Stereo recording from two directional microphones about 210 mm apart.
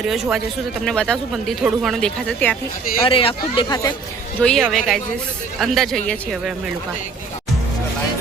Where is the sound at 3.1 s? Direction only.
25° left (ahead or behind).